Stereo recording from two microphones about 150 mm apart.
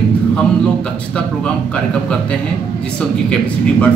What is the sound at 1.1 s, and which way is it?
Speech, 5° left (ahead or behind).